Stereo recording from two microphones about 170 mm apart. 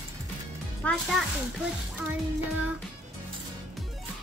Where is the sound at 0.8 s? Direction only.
10° left (ahead or behind).